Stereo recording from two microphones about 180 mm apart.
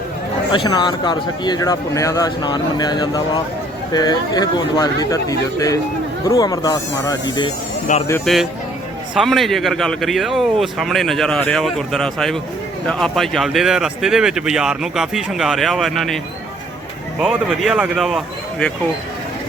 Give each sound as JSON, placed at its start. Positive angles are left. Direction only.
{"t": 0.5, "sound": "speech", "side_deg": 25}
{"t": 8.2, "sound": "speech", "side_deg": 0}